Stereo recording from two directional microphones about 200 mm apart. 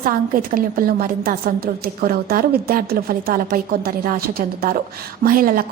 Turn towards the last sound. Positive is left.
turn(degrees=-45)  # may be behind; listen again after turning